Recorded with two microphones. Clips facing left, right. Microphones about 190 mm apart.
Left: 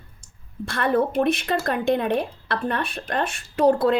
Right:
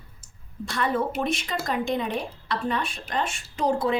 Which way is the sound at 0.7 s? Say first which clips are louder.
Left 4 dB; 55° left (ahead or behind).